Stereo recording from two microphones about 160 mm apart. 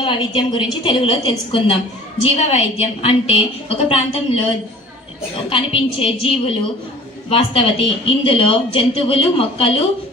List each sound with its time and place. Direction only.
0.0 s speech: 30° left (ahead or behind)
5.5 s speech: 35° left (ahead or behind)